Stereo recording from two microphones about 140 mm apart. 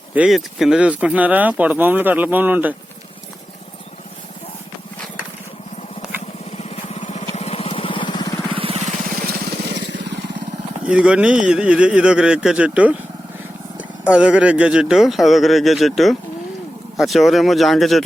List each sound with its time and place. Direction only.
0.1 s speech: 5° right (ahead or behind)
6.6 s vehicle: 50° left (ahead or behind); by 8.3 s 35° left (ahead or behind)
8.5 s vehicle: 45° right (ahead or behind); by 9.3 s 85° right
10.8 s speech: 10° right (ahead or behind)